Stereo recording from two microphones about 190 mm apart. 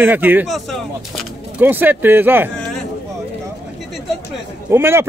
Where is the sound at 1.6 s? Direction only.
10° right (ahead or behind).